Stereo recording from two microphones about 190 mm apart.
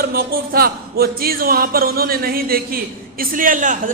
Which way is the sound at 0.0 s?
50° right (ahead or behind).